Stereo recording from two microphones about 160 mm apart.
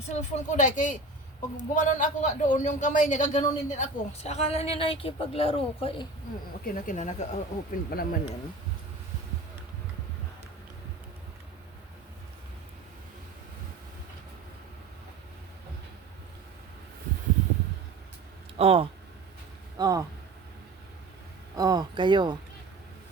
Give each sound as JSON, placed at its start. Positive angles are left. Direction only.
{"t": 0.1, "sound": "a man's voice", "side_deg": 45}
{"t": 6.7, "sound": "a man's voice", "side_deg": 55}
{"t": 7.9, "sound": "speech", "side_deg": 70}
{"t": 18.5, "sound": "speech", "side_deg": -35}
{"t": 19.7, "sound": "speech", "side_deg": -25}
{"t": 21.5, "sound": "speech", "side_deg": -25}